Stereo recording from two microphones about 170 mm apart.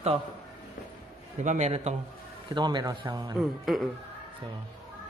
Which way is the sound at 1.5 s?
40° right (ahead or behind).